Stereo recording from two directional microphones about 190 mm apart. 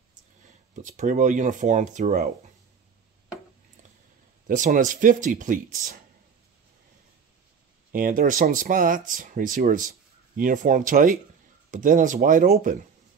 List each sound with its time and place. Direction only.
0.8 s speech: 40° right (ahead or behind)
4.5 s speech: 45° right (ahead or behind)
7.9 s speech: 45° right (ahead or behind)